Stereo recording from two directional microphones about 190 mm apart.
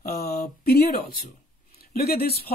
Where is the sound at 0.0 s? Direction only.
55° left (ahead or behind).